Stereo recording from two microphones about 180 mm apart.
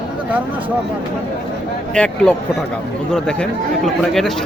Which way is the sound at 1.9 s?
5° left (ahead or behind).